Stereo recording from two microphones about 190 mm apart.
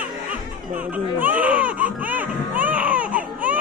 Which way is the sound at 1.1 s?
10° right (ahead or behind).